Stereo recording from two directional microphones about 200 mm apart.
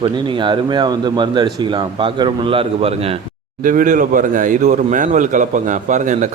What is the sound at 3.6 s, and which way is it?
Speech, 40° right (ahead or behind).